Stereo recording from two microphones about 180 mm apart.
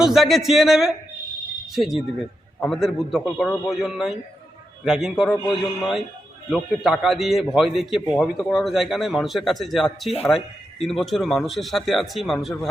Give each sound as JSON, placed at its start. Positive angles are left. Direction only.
{"t": 0.0, "sound": "speech", "side_deg": 0}